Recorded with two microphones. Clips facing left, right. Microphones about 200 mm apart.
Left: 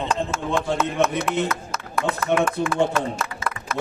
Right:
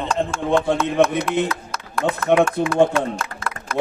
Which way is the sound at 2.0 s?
15° right (ahead or behind).